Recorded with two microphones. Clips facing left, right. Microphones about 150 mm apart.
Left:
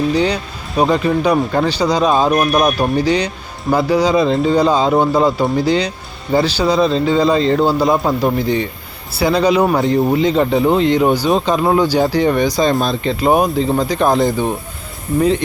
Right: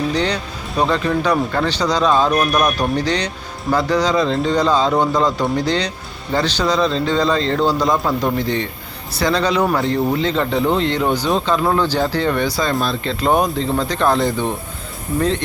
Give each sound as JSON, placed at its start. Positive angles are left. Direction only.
{"t": 0.1, "sound": "speech", "side_deg": 10}